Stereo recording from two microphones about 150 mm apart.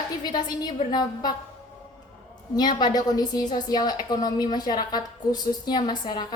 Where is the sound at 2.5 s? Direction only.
30° left (ahead or behind).